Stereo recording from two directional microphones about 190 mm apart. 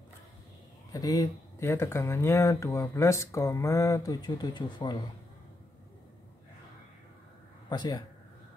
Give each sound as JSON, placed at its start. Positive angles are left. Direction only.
{"t": 0.9, "sound": "speech", "side_deg": 20}
{"t": 7.7, "sound": "a man's voice", "side_deg": 20}